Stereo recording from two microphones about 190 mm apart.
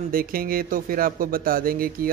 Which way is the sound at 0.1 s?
50° right (ahead or behind).